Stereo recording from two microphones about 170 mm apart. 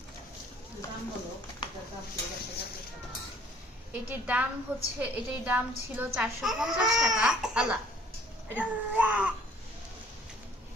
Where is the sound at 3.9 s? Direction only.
10° right (ahead or behind).